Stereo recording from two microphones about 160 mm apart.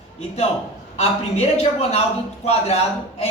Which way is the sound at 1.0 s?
40° left (ahead or behind).